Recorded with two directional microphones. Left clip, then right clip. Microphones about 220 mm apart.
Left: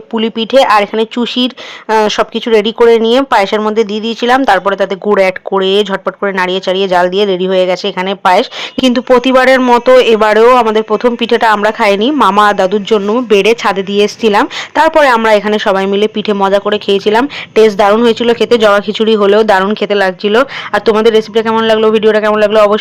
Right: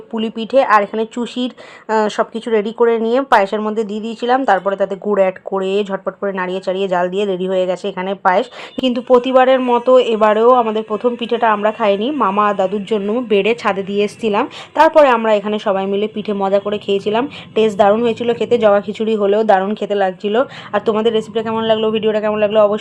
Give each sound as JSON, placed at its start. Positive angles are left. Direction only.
{"t": 0.1, "sound": "speech", "side_deg": 25}